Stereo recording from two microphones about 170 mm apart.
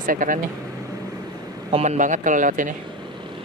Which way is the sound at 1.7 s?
40° right (ahead or behind).